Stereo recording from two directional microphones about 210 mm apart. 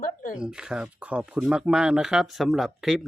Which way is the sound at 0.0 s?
40° left (ahead or behind).